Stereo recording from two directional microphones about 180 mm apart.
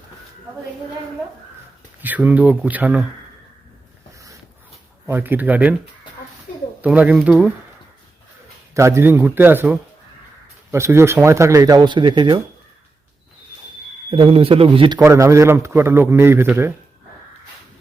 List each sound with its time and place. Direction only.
2.0 s speech: 10° right (ahead or behind)
5.0 s speech: 10° right (ahead or behind)
6.8 s speech: 10° right (ahead or behind)
8.7 s speech: 15° right (ahead or behind)
14.1 s speech: 30° right (ahead or behind); by 16.7 s 15° right (ahead or behind)